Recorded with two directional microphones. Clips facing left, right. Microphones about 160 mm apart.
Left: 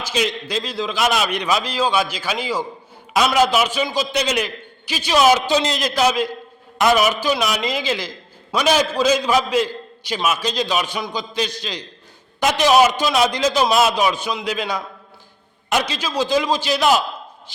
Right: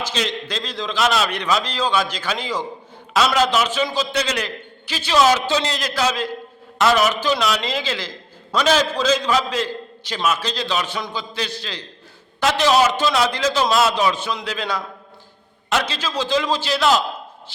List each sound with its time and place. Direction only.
0.0 s a man's voice: 10° left (ahead or behind)